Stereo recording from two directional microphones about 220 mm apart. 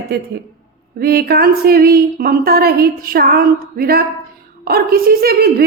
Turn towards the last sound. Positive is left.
turn(degrees=-45)  # may be behind; listen again after turning